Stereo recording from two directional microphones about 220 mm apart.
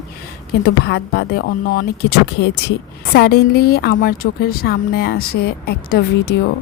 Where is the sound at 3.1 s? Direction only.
45° left (ahead or behind).